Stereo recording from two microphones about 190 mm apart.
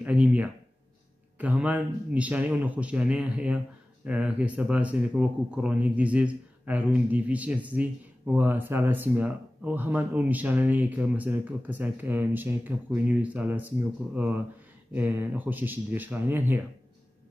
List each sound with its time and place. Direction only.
0.0 s a man's voice: 5° right (ahead or behind)